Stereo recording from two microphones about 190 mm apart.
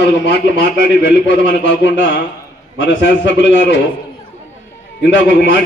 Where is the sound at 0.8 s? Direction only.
70° left (ahead or behind).